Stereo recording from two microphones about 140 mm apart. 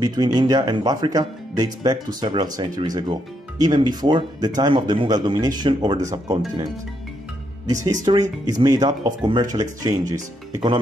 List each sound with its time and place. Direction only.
0.0 s speech: 30° right (ahead or behind)
7.9 s speech: 25° right (ahead or behind)